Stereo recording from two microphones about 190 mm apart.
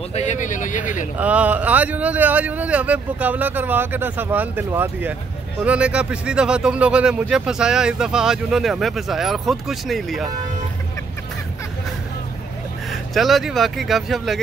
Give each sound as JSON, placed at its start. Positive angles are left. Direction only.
{"t": 0.1, "sound": "speech", "side_deg": 40}
{"t": 1.1, "sound": "speech", "side_deg": -10}
{"t": 12.9, "sound": "speech", "side_deg": 0}